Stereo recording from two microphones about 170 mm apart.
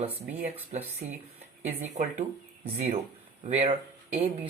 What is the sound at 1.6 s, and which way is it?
Speech, 45° right (ahead or behind).